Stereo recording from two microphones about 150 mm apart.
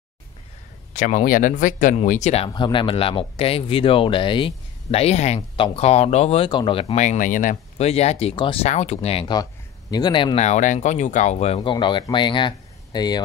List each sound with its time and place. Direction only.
0.9 s speech: 55° left (ahead or behind)
2.5 s speech: 30° left (ahead or behind)
7.0 s speech: 55° left (ahead or behind)
7.8 s speech: 45° left (ahead or behind)
8.6 s speech: 50° left (ahead or behind)
9.3 s speech: 25° left (ahead or behind)
10.4 s speech: 55° left (ahead or behind)
11.7 s speech: 30° left (ahead or behind)